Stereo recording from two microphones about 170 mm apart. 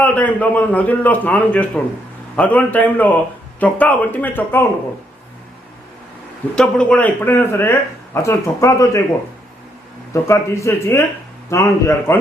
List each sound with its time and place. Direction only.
0.0 s speech: 10° left (ahead or behind)
6.6 s speech: 5° left (ahead or behind)
10.1 s a man's voice: 15° left (ahead or behind)